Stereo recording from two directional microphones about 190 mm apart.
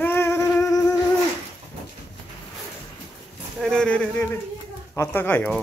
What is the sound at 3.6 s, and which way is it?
Speech, 5° left (ahead or behind).